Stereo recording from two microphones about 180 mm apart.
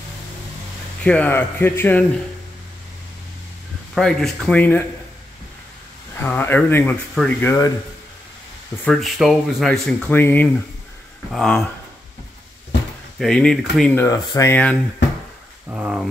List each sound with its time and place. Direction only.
1.0 s speech: 10° left (ahead or behind)
3.9 s speech: centre (ahead or behind)
6.1 s speech: 10° left (ahead or behind)
8.8 s speech: centre (ahead or behind)
13.2 s speech: 5° left (ahead or behind)
14.0 s speech: 20° left (ahead or behind)
15.7 s speech: 5° right (ahead or behind)